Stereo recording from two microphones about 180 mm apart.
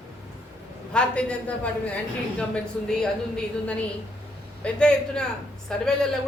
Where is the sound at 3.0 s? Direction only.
5° left (ahead or behind).